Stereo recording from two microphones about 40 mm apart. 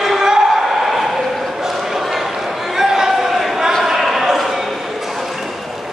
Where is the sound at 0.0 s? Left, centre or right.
Centre.